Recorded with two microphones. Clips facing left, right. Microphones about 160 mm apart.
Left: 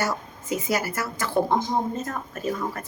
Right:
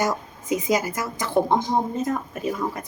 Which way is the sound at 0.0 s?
15° right (ahead or behind).